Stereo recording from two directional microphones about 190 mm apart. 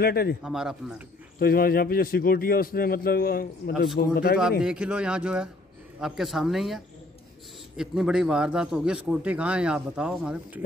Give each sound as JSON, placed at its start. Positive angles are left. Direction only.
{"t": 0.0, "sound": "a man's voice", "side_deg": 55}
{"t": 0.4, "sound": "a man's voice", "side_deg": -5}
{"t": 1.4, "sound": "a man's voice", "side_deg": 50}
{"t": 4.4, "sound": "a man's voice", "side_deg": -5}